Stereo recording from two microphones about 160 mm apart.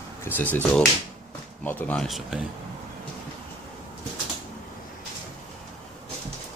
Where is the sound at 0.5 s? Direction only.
5° left (ahead or behind).